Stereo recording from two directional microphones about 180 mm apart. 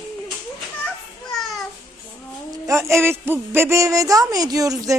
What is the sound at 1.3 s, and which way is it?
Babbling, centre (ahead or behind).